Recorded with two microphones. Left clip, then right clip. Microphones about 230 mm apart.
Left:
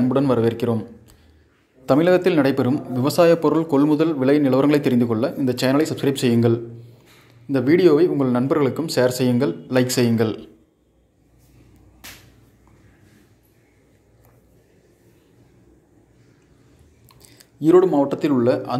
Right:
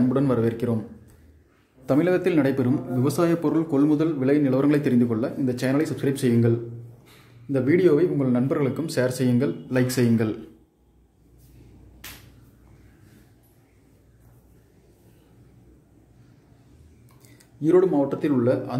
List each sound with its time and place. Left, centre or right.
0.1 s a man's voice: centre
17.2 s speech: centre